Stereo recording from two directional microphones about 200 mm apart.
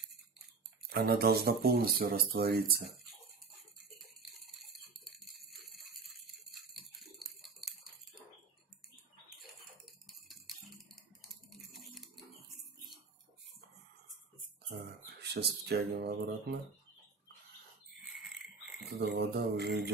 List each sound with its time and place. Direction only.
0.8 s speech: 50° right (ahead or behind)
4.2 s rattle: centre (ahead or behind)
5.4 s jingle bell: centre (ahead or behind)
7.0 s a sound: centre (ahead or behind)
11.5 s a sound: centre (ahead or behind)
15.2 s speech: 55° right (ahead or behind)
18.9 s speech: 55° right (ahead or behind)